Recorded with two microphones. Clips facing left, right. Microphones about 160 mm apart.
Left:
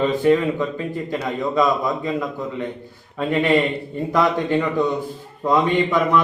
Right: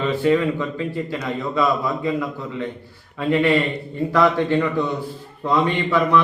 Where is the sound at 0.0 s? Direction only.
15° left (ahead or behind).